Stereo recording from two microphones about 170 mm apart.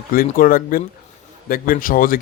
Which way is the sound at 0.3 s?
55° left (ahead or behind).